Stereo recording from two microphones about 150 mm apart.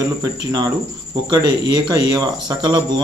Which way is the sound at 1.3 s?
30° right (ahead or behind).